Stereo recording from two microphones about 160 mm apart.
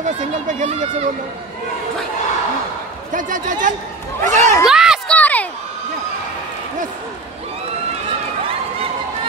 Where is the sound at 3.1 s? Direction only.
55° right (ahead or behind).